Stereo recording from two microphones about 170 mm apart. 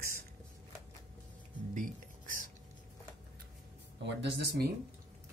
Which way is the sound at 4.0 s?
90° right.